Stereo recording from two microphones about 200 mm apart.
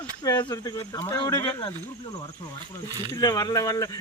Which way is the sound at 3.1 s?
20° left (ahead or behind).